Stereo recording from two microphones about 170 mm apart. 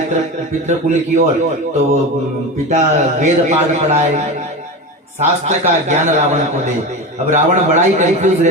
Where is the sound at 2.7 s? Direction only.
40° right (ahead or behind).